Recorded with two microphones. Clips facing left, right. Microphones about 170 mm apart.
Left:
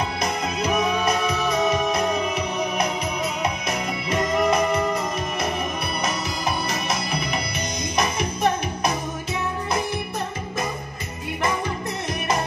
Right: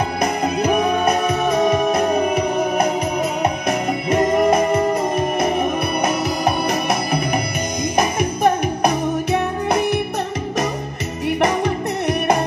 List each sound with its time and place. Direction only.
0.2 s music: 55° right (ahead or behind)
11.4 s music: 70° right (ahead or behind)